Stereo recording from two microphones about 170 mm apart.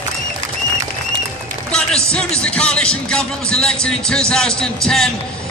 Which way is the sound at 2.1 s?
5° left (ahead or behind).